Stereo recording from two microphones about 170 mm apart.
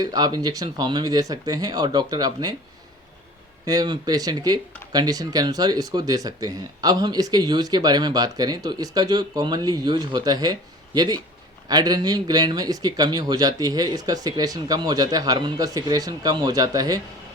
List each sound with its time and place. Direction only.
0.0 s speech: 25° right (ahead or behind)
3.7 s speech: 25° right (ahead or behind)